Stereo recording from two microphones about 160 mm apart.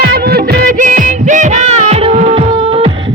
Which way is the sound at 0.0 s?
80° right.